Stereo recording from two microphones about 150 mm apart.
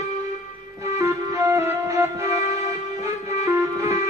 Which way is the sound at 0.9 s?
20° right (ahead or behind).